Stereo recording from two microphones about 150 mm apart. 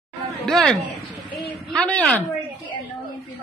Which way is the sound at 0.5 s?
Centre (ahead or behind).